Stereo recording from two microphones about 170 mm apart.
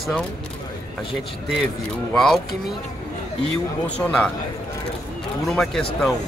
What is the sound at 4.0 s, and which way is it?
Speech, 5° left (ahead or behind).